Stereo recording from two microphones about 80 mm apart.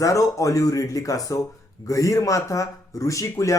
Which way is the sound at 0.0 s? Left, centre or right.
Left.